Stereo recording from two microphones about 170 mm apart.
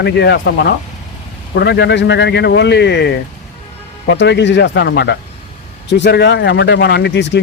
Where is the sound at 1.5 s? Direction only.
85° left.